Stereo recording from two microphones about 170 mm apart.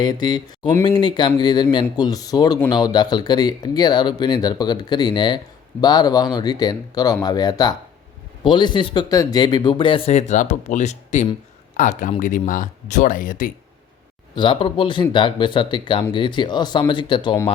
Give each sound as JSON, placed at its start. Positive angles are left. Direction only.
{"t": 0.0, "sound": "speech", "side_deg": 25}
{"t": 14.3, "sound": "speech", "side_deg": 30}